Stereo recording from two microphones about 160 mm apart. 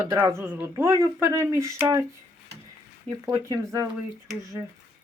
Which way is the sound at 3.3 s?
25° right (ahead or behind).